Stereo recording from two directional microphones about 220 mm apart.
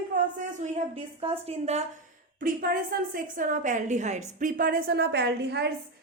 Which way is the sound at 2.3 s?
40° right (ahead or behind).